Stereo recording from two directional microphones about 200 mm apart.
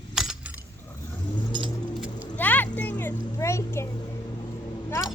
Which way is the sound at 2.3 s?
10° left (ahead or behind).